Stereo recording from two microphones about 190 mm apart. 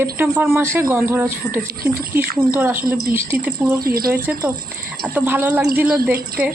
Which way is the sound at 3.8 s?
50° right (ahead or behind).